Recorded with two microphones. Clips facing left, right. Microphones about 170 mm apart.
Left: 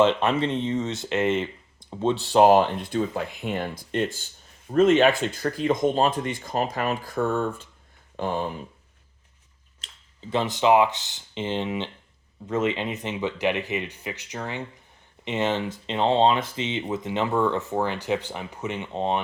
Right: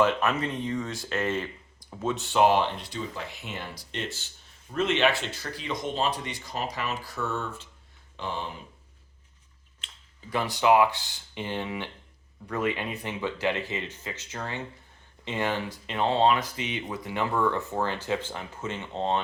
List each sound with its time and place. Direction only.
0.0 s speech: 30° left (ahead or behind); by 8.5 s 50° left (ahead or behind)
9.8 s a sound: 40° left (ahead or behind)
10.2 s speech: 20° left (ahead or behind)